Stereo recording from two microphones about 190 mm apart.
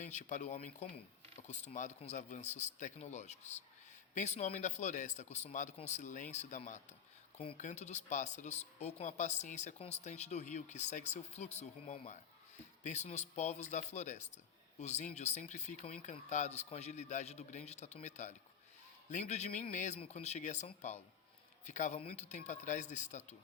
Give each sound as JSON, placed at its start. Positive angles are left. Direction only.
{"t": 0.0, "sound": "speech", "side_deg": 40}